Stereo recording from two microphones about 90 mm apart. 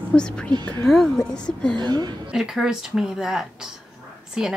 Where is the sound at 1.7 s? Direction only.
55° right (ahead or behind).